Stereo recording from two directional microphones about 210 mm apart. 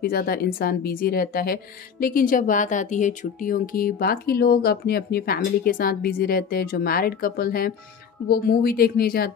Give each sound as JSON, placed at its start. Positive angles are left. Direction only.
{"t": 0.0, "sound": "a woman's voice", "side_deg": 45}